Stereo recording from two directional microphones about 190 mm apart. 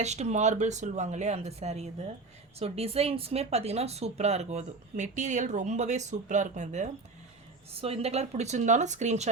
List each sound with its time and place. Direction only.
0.0 s a woman's voice: 35° right (ahead or behind)